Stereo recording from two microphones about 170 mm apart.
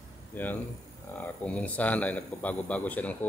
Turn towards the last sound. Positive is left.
turn(degrees=10)  # may be behind; listen again after turning